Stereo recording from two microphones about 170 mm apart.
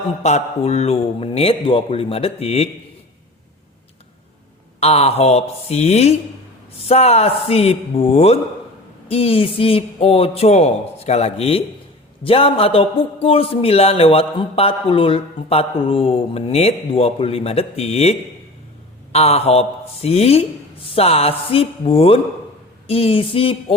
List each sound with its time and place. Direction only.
0.2 s a man's voice: 40° left (ahead or behind)
4.8 s a man's voice: 35° left (ahead or behind)